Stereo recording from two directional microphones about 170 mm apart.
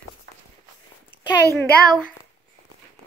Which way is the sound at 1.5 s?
15° left (ahead or behind).